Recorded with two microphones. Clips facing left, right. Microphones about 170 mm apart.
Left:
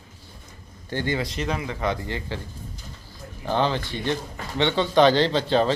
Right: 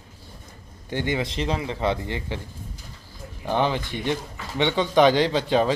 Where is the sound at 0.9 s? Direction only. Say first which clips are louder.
Right 1 dB; 20° right (ahead or behind).